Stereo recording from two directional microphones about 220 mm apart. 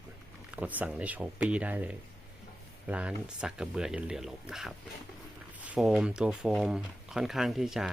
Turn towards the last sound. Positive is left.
turn(degrees=0)  # may be behind; listen again after turning